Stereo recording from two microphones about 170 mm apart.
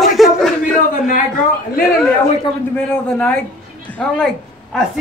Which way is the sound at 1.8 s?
Centre (ahead or behind).